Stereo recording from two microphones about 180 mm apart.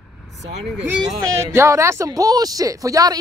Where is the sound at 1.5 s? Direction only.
15° right (ahead or behind).